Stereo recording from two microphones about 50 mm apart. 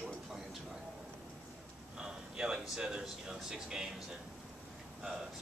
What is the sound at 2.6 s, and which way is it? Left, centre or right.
Speech, centre.